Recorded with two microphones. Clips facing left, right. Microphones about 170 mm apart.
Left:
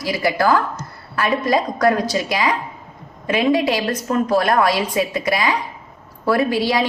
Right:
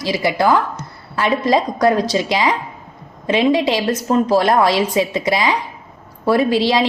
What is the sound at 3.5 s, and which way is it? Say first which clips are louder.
A woman's voice: right 2 dB; 20° right (ahead or behind).